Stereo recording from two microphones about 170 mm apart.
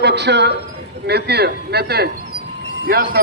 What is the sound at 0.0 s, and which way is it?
Speech, 80° right.